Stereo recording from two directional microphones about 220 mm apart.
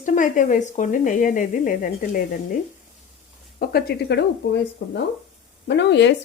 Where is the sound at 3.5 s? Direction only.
45° left (ahead or behind).